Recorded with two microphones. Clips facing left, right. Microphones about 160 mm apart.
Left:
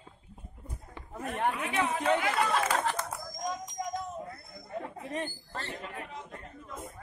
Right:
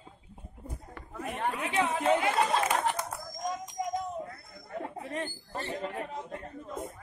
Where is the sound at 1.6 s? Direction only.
30° right (ahead or behind).